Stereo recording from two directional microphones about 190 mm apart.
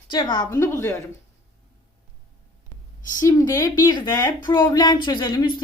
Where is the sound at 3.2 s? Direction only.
15° left (ahead or behind).